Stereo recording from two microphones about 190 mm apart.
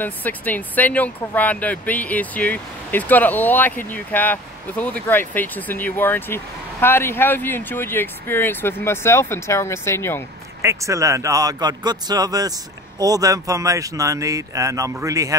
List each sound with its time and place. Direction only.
0.0 s speech: 10° left (ahead or behind)
10.6 s speech: 15° right (ahead or behind)